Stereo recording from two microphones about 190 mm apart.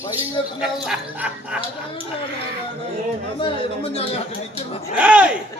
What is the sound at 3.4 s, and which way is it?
Speech, 30° left (ahead or behind).